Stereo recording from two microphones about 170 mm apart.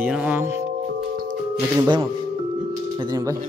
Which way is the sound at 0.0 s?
10° right (ahead or behind).